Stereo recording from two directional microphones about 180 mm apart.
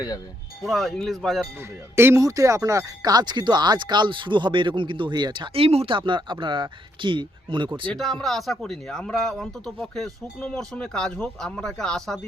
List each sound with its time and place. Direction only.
0.6 s speech: centre (ahead or behind)
2.0 s speech: 15° right (ahead or behind)
7.9 s speech: centre (ahead or behind)